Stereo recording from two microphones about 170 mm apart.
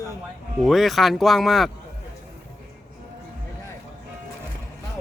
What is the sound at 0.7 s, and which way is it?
Speech, centre (ahead or behind).